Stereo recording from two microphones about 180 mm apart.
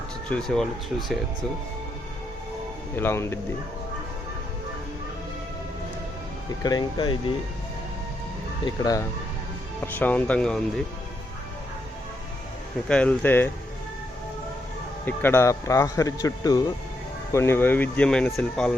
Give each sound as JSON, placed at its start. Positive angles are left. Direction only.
{"t": 0.3, "sound": "speech", "side_deg": 5}
{"t": 2.9, "sound": "speech", "side_deg": 15}
{"t": 6.6, "sound": "speech", "side_deg": 25}
{"t": 8.6, "sound": "speech", "side_deg": 20}
{"t": 9.8, "sound": "speech", "side_deg": 10}
{"t": 12.9, "sound": "speech", "side_deg": 5}
{"t": 15.0, "sound": "speech", "side_deg": 10}